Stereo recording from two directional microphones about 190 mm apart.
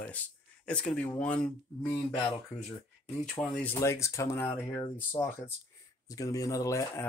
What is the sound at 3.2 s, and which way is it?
Speech, 5° left (ahead or behind).